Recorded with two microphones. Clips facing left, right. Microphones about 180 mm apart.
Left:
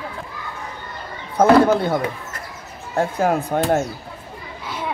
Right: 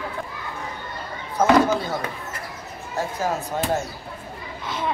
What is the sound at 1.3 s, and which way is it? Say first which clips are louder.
Speech: left 4 dB; 60° left (ahead or behind).